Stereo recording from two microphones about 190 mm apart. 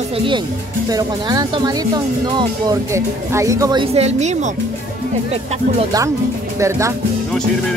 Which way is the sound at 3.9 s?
35° right (ahead or behind).